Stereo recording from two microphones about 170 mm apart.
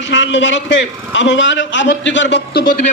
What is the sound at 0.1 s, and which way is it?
A man's voice, 90° left.